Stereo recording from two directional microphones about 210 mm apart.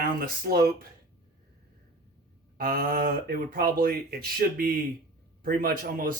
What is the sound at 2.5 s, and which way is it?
Speech, 45° right (ahead or behind).